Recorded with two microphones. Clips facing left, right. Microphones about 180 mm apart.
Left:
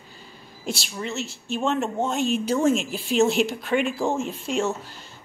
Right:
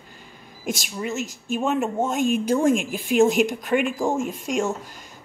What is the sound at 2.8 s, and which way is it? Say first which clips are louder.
Speech: right 3 dB; 50° right (ahead or behind).